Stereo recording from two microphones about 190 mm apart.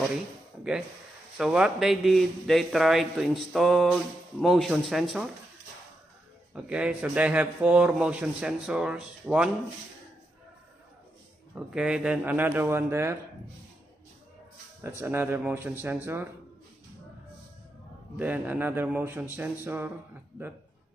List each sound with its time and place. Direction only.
1.4 s a man's voice: 5° right (ahead or behind)
6.5 s a man's voice: 5° right (ahead or behind)
11.5 s a man's voice: 5° right (ahead or behind)
14.8 s a man's voice: 10° right (ahead or behind)
18.1 s a man's voice: 10° right (ahead or behind)